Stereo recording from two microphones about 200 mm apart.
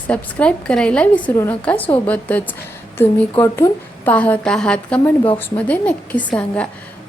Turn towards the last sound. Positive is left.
turn(degrees=5)  # may be behind; listen again after turning